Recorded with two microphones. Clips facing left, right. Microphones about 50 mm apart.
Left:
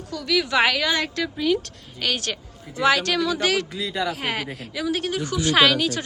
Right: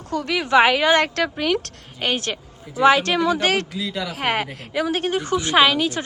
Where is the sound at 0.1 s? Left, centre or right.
Right.